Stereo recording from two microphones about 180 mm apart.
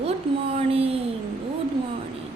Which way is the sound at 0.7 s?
30° right (ahead or behind).